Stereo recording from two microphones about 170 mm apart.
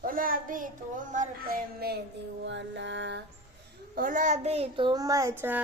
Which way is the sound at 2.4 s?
90° right.